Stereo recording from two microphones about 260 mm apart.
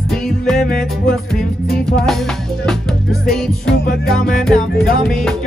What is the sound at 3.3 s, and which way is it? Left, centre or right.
Music, centre.